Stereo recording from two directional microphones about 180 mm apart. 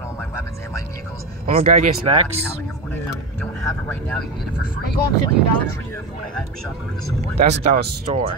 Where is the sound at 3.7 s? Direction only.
10° left (ahead or behind).